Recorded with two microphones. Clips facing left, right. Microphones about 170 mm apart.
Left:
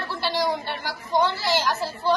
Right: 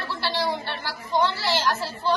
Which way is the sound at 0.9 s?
15° left (ahead or behind).